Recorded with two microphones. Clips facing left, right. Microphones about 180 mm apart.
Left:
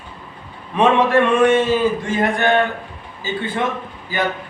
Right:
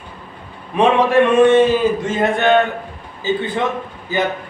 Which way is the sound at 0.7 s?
15° right (ahead or behind).